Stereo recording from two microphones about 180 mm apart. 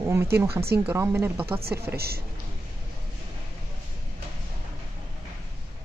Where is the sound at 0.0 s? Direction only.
15° right (ahead or behind).